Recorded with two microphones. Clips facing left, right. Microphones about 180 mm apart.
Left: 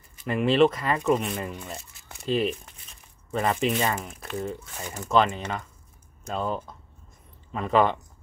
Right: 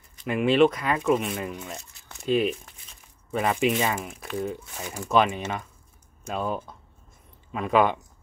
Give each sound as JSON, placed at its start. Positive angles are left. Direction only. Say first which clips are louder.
{"t": 0.3, "sound": "speech", "louder": "right 1 dB", "side_deg": -5}